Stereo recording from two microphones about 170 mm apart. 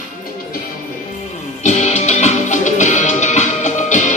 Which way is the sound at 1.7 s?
40° left (ahead or behind).